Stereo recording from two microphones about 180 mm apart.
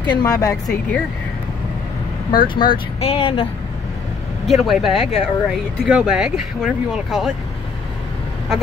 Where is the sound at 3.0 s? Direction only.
30° left (ahead or behind).